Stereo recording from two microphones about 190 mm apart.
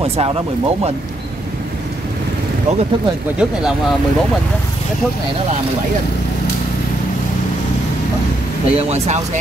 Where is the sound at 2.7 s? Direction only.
35° right (ahead or behind).